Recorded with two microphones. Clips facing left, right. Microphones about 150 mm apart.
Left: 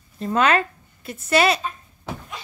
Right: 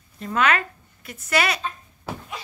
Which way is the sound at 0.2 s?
30° left (ahead or behind).